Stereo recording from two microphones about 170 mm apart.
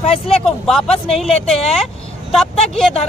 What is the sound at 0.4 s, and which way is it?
Speech, 5° left (ahead or behind).